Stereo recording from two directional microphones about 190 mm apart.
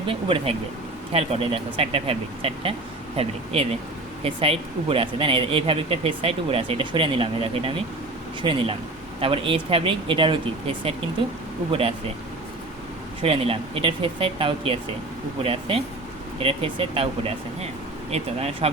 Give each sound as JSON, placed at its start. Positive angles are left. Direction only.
{"t": 0.1, "sound": "speech", "side_deg": -30}
{"t": 11.7, "sound": "speech", "side_deg": -30}
{"t": 13.2, "sound": "speech", "side_deg": -30}